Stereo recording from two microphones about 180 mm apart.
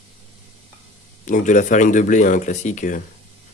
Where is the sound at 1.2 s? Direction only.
45° left (ahead or behind).